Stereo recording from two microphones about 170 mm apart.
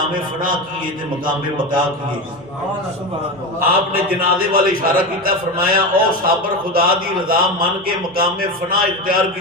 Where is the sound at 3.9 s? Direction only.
60° right (ahead or behind).